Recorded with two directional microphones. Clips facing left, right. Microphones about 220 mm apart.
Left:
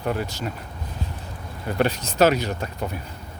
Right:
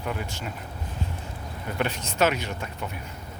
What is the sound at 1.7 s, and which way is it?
Speech, 35° left (ahead or behind).